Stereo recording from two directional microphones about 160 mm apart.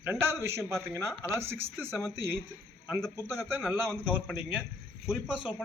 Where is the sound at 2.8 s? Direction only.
Centre (ahead or behind).